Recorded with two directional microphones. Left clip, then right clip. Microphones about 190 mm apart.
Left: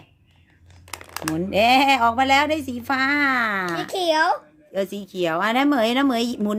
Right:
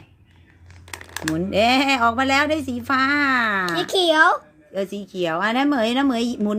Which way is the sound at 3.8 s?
20° right (ahead or behind).